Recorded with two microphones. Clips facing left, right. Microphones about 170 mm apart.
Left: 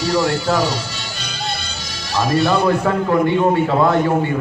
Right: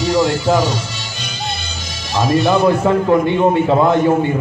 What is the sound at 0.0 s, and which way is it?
A man's voice, 20° right (ahead or behind).